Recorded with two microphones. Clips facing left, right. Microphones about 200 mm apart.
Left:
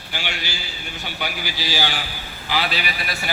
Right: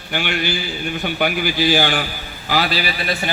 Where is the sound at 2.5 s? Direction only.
40° right (ahead or behind).